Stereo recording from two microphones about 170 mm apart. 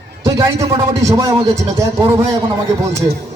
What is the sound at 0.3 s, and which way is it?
A man's voice, 15° right (ahead or behind).